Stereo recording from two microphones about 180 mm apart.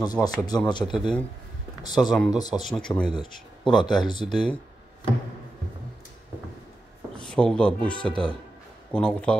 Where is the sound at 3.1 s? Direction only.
25° left (ahead or behind).